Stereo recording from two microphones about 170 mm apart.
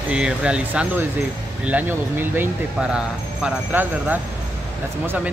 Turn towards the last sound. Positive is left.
turn(degrees=-10)  # may be behind; listen again after turning